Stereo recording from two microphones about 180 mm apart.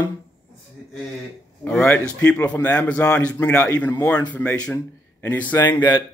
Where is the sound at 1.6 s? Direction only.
10° left (ahead or behind).